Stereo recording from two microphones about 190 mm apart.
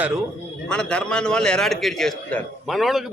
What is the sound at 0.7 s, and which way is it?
A man's voice, 5° left (ahead or behind).